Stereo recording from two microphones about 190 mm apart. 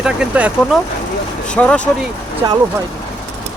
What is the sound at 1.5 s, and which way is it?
Speech, 5° left (ahead or behind).